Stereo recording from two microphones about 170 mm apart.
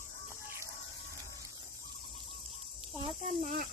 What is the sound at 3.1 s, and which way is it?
Snake, 40° right (ahead or behind).